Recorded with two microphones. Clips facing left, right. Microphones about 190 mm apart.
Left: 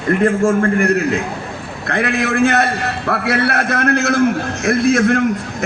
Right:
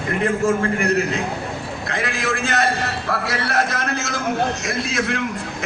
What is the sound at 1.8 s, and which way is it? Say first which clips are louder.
A man's voice: left 7 dB; 60° left (ahead or behind).